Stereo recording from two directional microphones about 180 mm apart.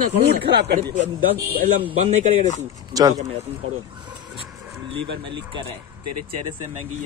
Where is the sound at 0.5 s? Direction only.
65° right (ahead or behind).